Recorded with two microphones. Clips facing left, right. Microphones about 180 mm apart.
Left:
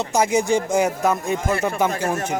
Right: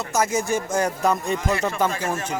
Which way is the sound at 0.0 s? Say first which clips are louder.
Left 4 dB; 15° left (ahead or behind).